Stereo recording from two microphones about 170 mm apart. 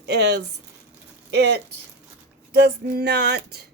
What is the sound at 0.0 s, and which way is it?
Speech, 80° right.